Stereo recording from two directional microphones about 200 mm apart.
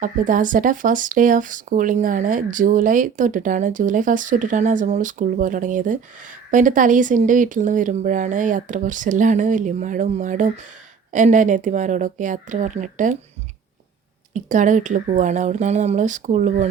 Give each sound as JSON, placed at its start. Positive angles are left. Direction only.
{"t": 0.0, "sound": "speech", "side_deg": -40}
{"t": 14.3, "sound": "speech", "side_deg": -40}